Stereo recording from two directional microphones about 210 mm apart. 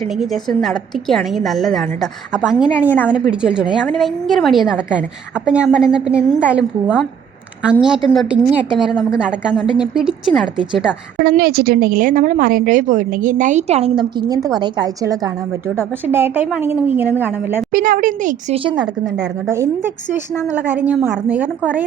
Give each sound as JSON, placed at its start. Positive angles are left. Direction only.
{"t": 0.0, "sound": "a woman's voice", "side_deg": 0}
{"t": 11.2, "sound": "a woman's voice", "side_deg": -45}
{"t": 17.7, "sound": "a woman's voice", "side_deg": -40}
{"t": 19.0, "sound": "a woman's voice", "side_deg": -5}